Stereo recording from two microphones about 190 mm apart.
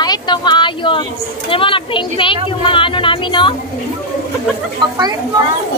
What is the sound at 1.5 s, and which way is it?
Speech, 25° left (ahead or behind).